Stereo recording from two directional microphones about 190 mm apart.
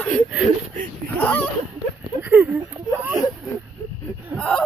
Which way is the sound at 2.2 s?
10° right (ahead or behind).